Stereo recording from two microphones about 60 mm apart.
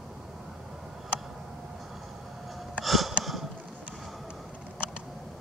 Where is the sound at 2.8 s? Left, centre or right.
Centre.